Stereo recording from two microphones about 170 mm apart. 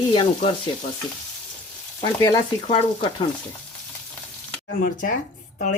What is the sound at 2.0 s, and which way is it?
Speech, 20° left (ahead or behind).